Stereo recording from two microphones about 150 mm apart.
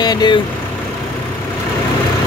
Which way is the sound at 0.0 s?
30° left (ahead or behind).